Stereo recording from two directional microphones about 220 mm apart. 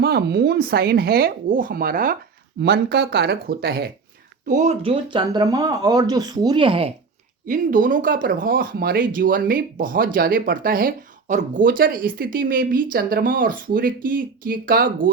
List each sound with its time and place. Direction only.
0.0 s speech: 45° right (ahead or behind)
4.4 s speech: 35° right (ahead or behind)
7.4 s speech: 35° right (ahead or behind)